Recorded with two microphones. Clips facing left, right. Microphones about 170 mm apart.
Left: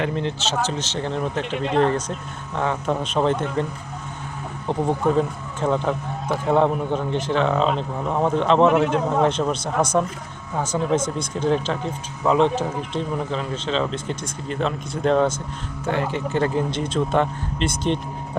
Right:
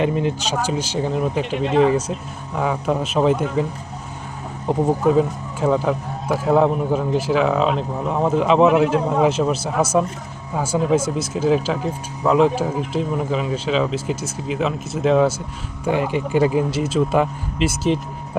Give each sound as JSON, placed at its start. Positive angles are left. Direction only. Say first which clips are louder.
{"t": 0.0, "sound": "speech", "louder": "right 4 dB", "side_deg": -10}
{"t": 4.7, "sound": "speech", "louder": "right 4 dB", "side_deg": -5}